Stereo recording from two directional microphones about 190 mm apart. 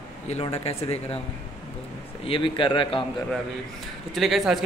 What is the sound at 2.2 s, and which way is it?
Speech, 25° left (ahead or behind).